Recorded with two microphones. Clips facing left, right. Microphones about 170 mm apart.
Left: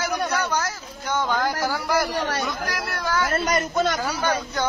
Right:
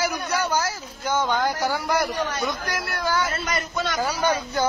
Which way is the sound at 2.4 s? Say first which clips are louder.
Even; centre (ahead or behind).